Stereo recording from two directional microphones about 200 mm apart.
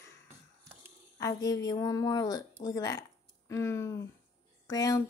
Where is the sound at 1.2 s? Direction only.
15° left (ahead or behind).